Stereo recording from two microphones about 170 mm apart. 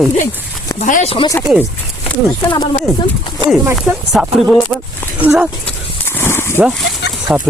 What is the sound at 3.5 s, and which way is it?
Speech, 5° right (ahead or behind).